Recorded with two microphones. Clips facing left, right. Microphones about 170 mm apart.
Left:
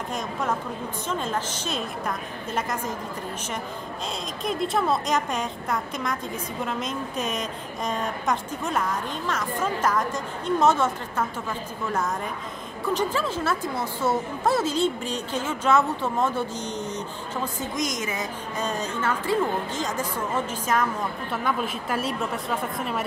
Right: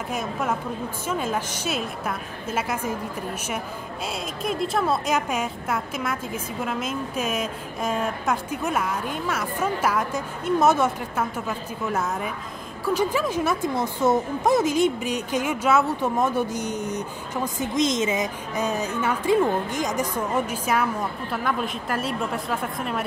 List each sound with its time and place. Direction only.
0.1 s a woman's voice: 10° right (ahead or behind)
4.4 s a woman's voice: centre (ahead or behind)
17.6 s a woman's voice: 25° right (ahead or behind); by 23.0 s centre (ahead or behind)